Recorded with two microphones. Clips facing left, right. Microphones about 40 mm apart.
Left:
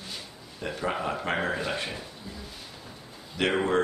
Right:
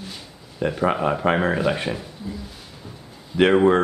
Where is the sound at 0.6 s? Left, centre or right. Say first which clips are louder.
Right 9 dB; right.